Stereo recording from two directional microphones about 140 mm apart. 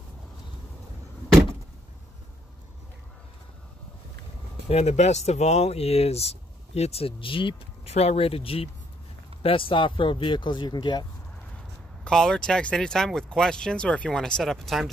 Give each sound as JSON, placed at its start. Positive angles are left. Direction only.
{"t": 4.6, "sound": "speech", "side_deg": 50}
{"t": 12.0, "sound": "speech", "side_deg": 5}